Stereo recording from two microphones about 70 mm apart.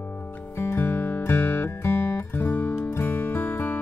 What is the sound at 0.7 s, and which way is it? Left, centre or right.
Music, left.